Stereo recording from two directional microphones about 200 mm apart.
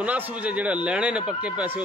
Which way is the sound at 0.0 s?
5° right (ahead or behind).